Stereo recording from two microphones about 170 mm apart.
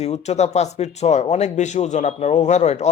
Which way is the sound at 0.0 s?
40° left (ahead or behind).